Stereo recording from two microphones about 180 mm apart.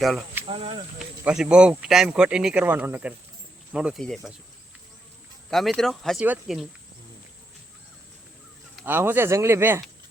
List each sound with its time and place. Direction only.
0.0 s speech: centre (ahead or behind)
0.4 s speech: 30° right (ahead or behind)
0.9 s speech: 5° right (ahead or behind)
5.5 s speech: centre (ahead or behind)
8.7 s speech: 10° right (ahead or behind)